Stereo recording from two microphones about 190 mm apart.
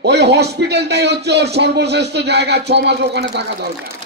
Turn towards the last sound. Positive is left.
turn(degrees=-60)  # may be behind; listen again after turning